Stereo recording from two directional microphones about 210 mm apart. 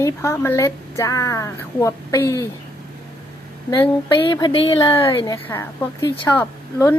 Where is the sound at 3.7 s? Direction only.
20° left (ahead or behind).